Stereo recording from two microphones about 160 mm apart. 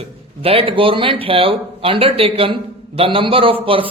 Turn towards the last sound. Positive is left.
turn(degrees=-35)  # may be behind; listen again after turning